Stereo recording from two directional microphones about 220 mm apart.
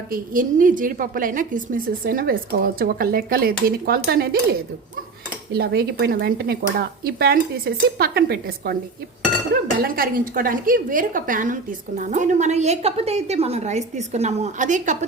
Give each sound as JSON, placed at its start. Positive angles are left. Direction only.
{"t": 0.1, "sound": "a woman's voice", "side_deg": -40}
{"t": 5.5, "sound": "speech", "side_deg": -45}
{"t": 9.7, "sound": "a woman's voice", "side_deg": -40}